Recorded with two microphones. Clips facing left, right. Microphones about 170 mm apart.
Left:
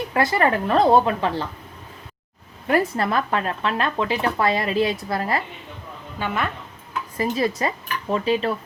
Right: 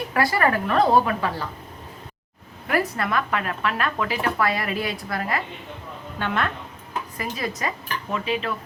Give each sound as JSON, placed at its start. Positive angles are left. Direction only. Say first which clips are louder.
{"t": 0.1, "sound": "speech", "louder": "left 1 dB", "side_deg": 25}
{"t": 2.6, "sound": "speech", "louder": "left 3 dB", "side_deg": 25}
{"t": 6.1, "sound": "a woman's voice", "louder": "even", "side_deg": 10}
{"t": 7.2, "sound": "speech", "louder": "left 8 dB", "side_deg": 25}
{"t": 8.1, "sound": "cutlery", "louder": "left 5 dB", "side_deg": 35}